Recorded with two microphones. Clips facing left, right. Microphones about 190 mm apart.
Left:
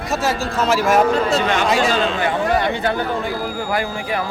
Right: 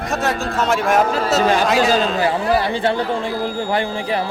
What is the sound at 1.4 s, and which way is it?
Speech, 35° right (ahead or behind).